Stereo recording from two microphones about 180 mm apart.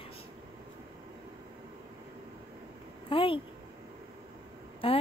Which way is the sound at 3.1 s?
30° left (ahead or behind).